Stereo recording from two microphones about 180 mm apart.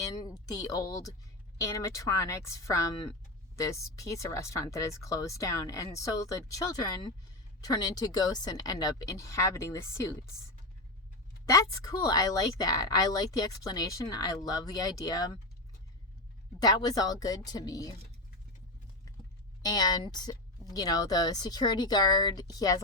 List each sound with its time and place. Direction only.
0.0 s a woman's voice: 20° left (ahead or behind)
11.4 s a woman's voice: 20° left (ahead or behind)
16.6 s a woman's voice: 20° left (ahead or behind)
19.6 s a woman's voice: 20° left (ahead or behind)